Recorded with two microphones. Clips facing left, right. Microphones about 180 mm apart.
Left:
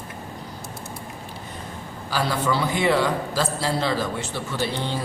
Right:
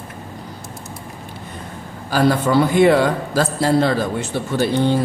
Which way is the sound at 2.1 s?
50° right (ahead or behind).